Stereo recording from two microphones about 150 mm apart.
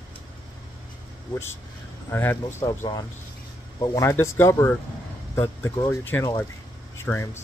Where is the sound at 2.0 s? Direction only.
15° left (ahead or behind).